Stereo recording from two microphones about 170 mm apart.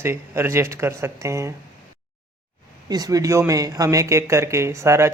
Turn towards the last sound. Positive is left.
turn(degrees=-15)  # may be behind; listen again after turning